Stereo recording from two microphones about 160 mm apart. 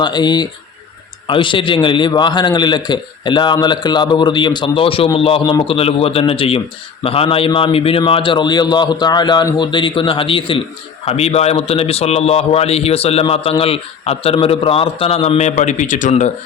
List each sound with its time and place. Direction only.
0.0 s a man's voice: 25° left (ahead or behind)
5.4 s a man's voice: 25° left (ahead or behind)
5.6 s a man's voice: 35° left (ahead or behind)